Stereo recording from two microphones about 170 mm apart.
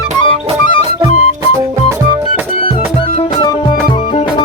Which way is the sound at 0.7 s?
35° left (ahead or behind).